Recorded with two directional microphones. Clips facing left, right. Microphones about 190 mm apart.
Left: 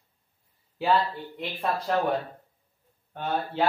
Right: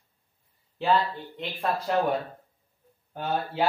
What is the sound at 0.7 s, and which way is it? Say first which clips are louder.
Speech: even; centre (ahead or behind).